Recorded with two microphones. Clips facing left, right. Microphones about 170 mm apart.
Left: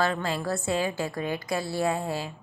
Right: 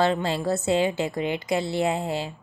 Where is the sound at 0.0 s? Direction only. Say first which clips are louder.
Right 4 dB; 25° right (ahead or behind).